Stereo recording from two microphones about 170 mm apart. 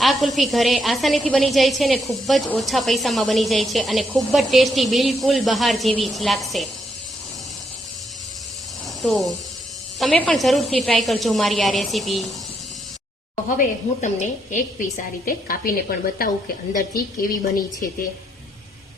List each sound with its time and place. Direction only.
0.0 s a woman's voice: centre (ahead or behind)
9.0 s a woman's voice: centre (ahead or behind)
13.6 s a woman's voice: 50° left (ahead or behind)